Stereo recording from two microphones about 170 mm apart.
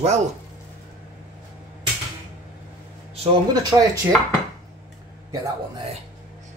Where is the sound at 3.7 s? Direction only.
20° right (ahead or behind).